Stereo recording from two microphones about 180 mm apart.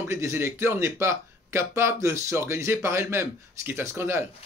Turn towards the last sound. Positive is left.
turn(degrees=-15)  # may be behind; listen again after turning